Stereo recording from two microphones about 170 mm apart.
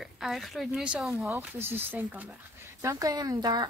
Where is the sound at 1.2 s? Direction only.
15° right (ahead or behind).